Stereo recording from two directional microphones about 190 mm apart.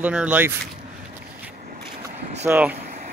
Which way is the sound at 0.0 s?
5° right (ahead or behind).